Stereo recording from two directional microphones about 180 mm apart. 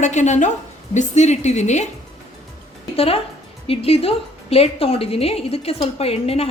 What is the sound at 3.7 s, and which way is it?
A woman's voice, 35° left (ahead or behind).